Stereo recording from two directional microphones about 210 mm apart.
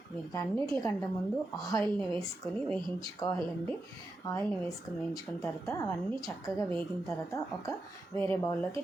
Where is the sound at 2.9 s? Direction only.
20° left (ahead or behind).